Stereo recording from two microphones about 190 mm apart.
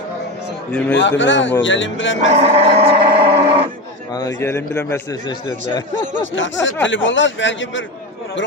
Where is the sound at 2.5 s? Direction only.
30° right (ahead or behind).